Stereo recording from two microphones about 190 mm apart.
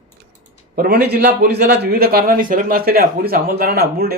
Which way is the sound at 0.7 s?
50° right (ahead or behind).